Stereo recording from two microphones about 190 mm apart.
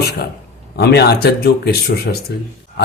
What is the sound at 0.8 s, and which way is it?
Speech, 60° left (ahead or behind).